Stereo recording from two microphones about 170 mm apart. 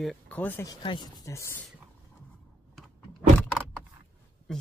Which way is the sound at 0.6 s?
25° left (ahead or behind).